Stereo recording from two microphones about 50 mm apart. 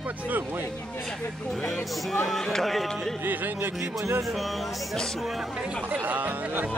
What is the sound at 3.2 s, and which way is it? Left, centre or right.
Music, right.